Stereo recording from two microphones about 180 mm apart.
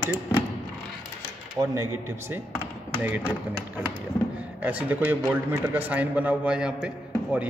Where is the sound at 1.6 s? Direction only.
15° right (ahead or behind).